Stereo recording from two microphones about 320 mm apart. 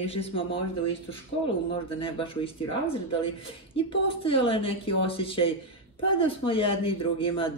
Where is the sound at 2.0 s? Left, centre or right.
Centre.